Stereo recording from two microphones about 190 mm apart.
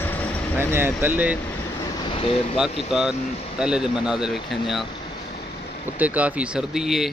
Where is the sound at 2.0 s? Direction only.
25° left (ahead or behind).